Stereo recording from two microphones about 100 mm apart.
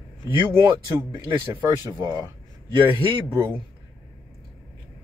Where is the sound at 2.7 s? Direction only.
55° right (ahead or behind).